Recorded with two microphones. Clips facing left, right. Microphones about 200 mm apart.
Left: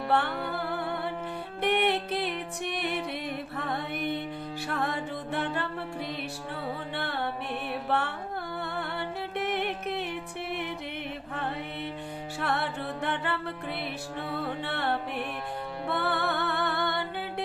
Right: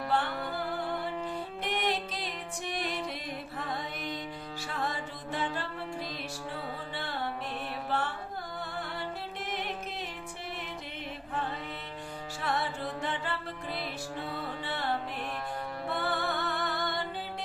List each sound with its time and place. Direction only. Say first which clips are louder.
0.1 s music: left 4 dB; 60° left (ahead or behind)
6.9 s music: left 2 dB; 60° left (ahead or behind)
7.9 s carnatic music: left 3 dB; 60° left (ahead or behind)
8.7 s music: left 4 dB; 60° left (ahead or behind)
12.4 s music: left 2 dB; 60° left (ahead or behind)
14.6 s music: left 3 dB; 60° left (ahead or behind)